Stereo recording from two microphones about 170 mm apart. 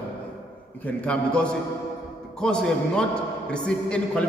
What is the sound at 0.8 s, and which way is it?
A man's voice, 5° left (ahead or behind).